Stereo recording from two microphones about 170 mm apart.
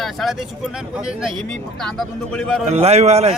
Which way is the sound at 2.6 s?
40° right (ahead or behind).